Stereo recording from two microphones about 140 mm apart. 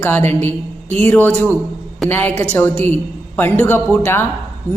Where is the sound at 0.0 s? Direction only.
15° left (ahead or behind).